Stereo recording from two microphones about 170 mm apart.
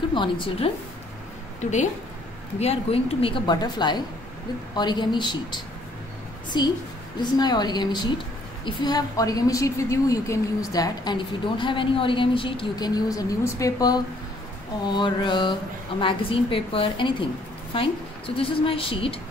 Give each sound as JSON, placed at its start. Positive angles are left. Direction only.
{"t": 0.1, "sound": "a woman's voice", "side_deg": 30}
{"t": 1.6, "sound": "a woman's voice", "side_deg": 45}